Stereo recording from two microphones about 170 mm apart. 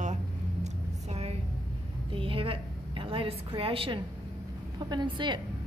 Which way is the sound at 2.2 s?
30° right (ahead or behind).